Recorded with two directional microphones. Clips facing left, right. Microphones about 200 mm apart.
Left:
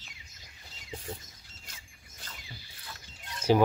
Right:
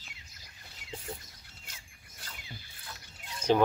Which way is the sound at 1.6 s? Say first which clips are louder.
Left 2 dB; 5° right (ahead or behind).